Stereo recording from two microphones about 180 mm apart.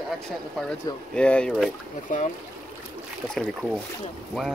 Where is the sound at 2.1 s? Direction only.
45° left (ahead or behind).